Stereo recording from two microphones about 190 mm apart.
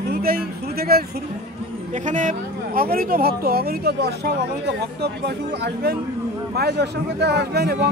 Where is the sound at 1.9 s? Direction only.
40° right (ahead or behind).